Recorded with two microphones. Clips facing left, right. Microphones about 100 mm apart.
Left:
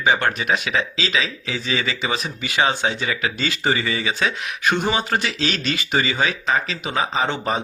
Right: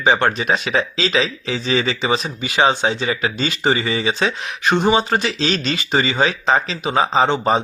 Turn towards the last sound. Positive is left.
turn(degrees=-25)  # may be behind; listen again after turning